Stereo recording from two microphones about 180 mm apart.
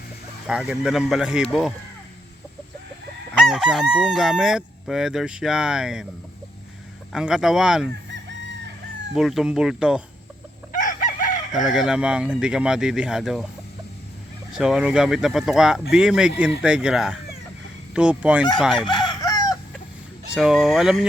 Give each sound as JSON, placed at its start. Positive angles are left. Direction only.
{"t": 0.4, "sound": "crowing", "side_deg": -5}
{"t": 3.4, "sound": "crowing", "side_deg": -5}
{"t": 7.1, "sound": "crowing", "side_deg": -5}
{"t": 9.1, "sound": "crowing", "side_deg": 0}
{"t": 10.7, "sound": "chicken", "side_deg": 45}
{"t": 11.5, "sound": "crowing", "side_deg": 0}
{"t": 14.5, "sound": "crowing", "side_deg": -5}
{"t": 17.9, "sound": "fowl", "side_deg": -5}
{"t": 18.9, "sound": "chicken", "side_deg": 25}
{"t": 20.3, "sound": "crowing", "side_deg": -5}